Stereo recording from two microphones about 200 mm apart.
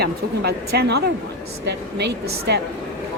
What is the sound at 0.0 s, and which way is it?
A woman's voice, 55° right (ahead or behind).